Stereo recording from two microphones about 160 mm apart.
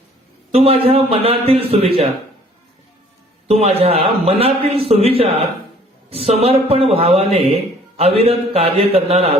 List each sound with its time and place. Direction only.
0.5 s speech: 40° right (ahead or behind)
3.4 s speech: 40° right (ahead or behind)